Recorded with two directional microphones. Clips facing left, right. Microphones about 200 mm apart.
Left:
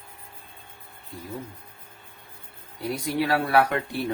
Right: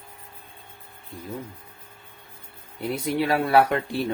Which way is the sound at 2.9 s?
25° right (ahead or behind).